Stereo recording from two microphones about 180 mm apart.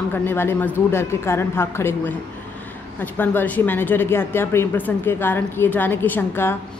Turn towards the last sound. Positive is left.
turn(degrees=10)  # may be behind; listen again after turning